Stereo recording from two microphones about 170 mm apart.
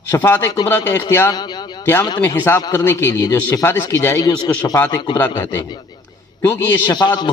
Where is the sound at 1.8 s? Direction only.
15° left (ahead or behind).